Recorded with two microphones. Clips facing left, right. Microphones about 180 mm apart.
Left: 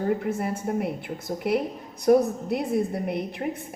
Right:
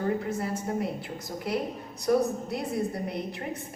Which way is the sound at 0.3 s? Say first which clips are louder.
Left 3 dB; 55° left (ahead or behind).